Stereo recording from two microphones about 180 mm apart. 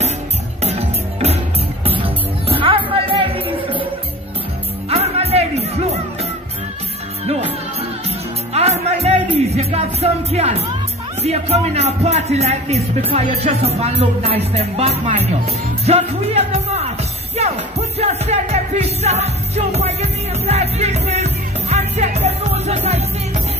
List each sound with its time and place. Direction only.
0.7 s music: 35° right (ahead or behind)
4.8 s music: 35° right (ahead or behind)
8.5 s music: 35° right (ahead or behind)
11.2 s a man's voice: 35° right (ahead or behind)
15.8 s music: 35° right (ahead or behind)